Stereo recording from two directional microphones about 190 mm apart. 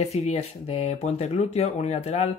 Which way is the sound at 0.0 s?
35° left (ahead or behind).